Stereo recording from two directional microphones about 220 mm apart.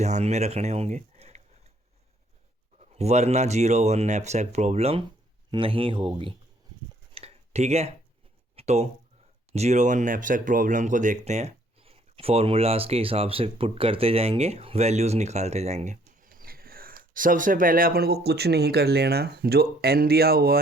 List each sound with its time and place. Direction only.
0.0 s speech: 30° right (ahead or behind)
2.9 s speech: 30° right (ahead or behind)
7.1 s tick-tock: 25° right (ahead or behind)
8.5 s a sound: 30° right (ahead or behind)
9.5 s speech: 30° right (ahead or behind)